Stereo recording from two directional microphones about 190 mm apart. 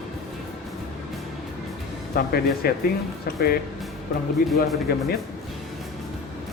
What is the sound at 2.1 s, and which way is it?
Speech, 55° left (ahead or behind).